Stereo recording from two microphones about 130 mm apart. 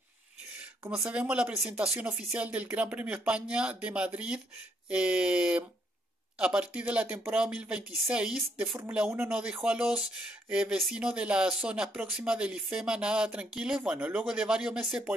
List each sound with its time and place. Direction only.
0.8 s speech: 15° right (ahead or behind)